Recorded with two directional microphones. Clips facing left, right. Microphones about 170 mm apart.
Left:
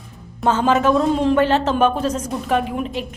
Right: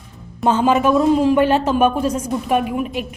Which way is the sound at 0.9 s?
5° right (ahead or behind).